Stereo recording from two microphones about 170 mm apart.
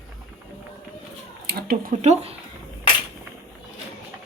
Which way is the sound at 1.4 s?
65° right (ahead or behind).